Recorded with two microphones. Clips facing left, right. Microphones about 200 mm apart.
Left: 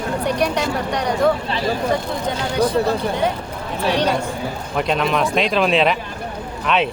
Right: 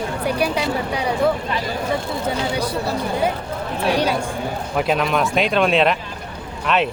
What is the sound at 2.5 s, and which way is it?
Speech, 10° right (ahead or behind).